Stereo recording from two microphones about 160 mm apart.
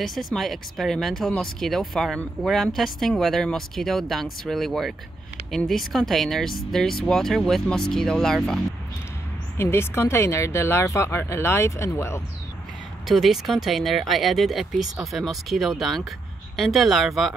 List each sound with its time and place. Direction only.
0.0 s speech: centre (ahead or behind)
9.6 s speech: 15° left (ahead or behind)
13.1 s speech: centre (ahead or behind)